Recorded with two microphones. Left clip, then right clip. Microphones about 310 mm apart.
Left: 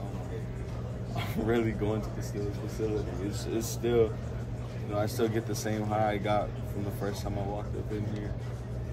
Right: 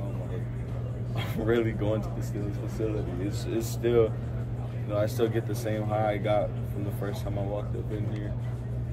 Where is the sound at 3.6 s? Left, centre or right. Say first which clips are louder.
Right 3 dB; centre.